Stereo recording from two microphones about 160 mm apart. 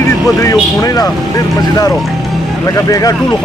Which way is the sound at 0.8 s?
20° left (ahead or behind).